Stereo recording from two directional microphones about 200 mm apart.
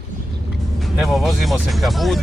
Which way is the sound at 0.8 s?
Centre (ahead or behind).